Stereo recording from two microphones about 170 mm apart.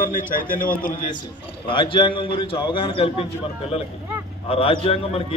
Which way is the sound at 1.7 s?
30° left (ahead or behind).